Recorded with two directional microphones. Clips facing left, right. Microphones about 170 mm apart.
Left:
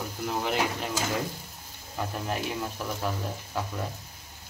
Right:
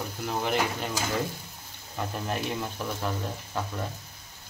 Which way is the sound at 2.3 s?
Centre (ahead or behind).